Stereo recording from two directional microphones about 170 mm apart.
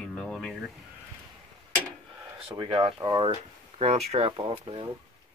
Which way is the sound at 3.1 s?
25° right (ahead or behind).